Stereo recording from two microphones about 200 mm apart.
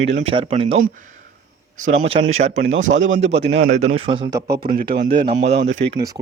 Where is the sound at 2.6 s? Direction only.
75° right (ahead or behind).